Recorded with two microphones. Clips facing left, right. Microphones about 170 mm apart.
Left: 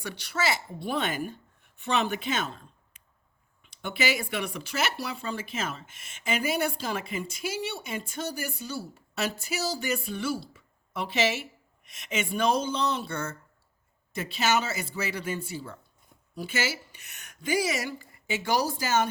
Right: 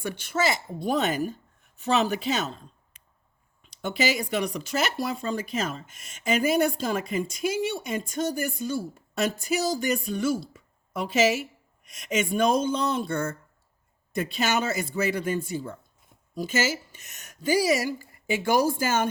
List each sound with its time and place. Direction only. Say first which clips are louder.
0.0 s speech: right 4 dB; 50° right (ahead or behind)